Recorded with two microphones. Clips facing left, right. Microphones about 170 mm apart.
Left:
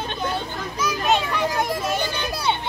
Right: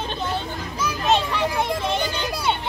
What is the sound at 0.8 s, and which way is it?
Children playing, 5° left (ahead or behind).